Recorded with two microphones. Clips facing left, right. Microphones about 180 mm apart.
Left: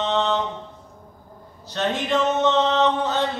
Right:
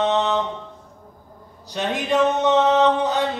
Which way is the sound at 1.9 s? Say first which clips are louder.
Right 3 dB; 15° right (ahead or behind).